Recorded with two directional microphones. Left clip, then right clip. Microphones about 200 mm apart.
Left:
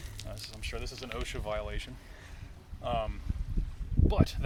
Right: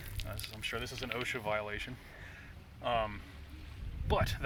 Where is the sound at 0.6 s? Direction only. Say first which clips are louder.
Right 4 dB; 10° left (ahead or behind).